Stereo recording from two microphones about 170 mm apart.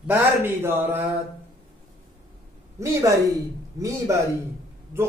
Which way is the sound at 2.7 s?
15° right (ahead or behind).